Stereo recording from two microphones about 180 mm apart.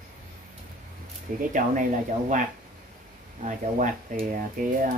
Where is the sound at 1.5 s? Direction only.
45° right (ahead or behind).